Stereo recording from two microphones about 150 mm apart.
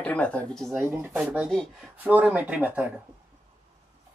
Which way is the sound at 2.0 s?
10° right (ahead or behind).